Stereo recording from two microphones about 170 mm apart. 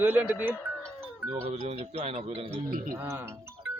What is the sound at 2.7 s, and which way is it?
Speech, 55° right (ahead or behind).